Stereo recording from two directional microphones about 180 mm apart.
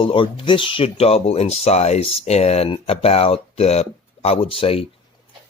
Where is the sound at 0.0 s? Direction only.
30° left (ahead or behind).